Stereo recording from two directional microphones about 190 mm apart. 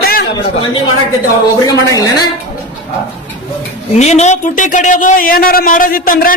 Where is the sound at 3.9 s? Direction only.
35° left (ahead or behind).